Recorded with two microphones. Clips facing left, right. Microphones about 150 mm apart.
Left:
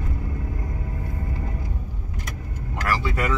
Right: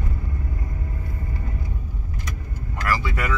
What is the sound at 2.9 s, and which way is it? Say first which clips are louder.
Speech: left 1 dB; 30° left (ahead or behind).